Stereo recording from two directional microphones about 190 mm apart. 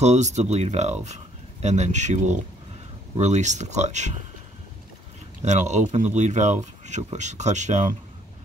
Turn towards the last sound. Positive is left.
turn(degrees=-40)  # may be behind; listen again after turning